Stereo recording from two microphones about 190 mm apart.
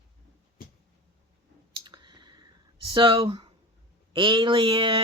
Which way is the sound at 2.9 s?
25° right (ahead or behind).